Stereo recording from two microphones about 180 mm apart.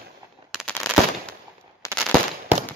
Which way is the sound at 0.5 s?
Centre (ahead or behind).